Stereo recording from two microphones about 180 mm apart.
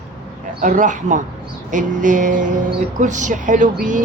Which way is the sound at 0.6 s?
45° right (ahead or behind).